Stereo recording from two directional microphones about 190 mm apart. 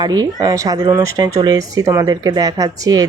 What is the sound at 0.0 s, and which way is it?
Speech, 20° right (ahead or behind).